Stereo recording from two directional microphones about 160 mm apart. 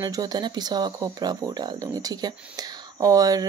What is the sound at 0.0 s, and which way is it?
Speech, 25° right (ahead or behind).